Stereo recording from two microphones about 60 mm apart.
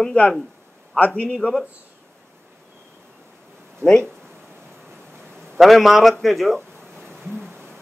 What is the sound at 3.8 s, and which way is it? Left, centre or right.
Speech, right.